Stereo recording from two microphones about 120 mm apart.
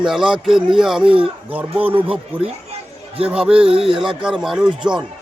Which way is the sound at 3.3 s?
10° right (ahead or behind).